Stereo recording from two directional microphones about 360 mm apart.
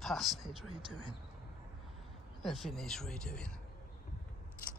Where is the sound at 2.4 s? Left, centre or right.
Centre.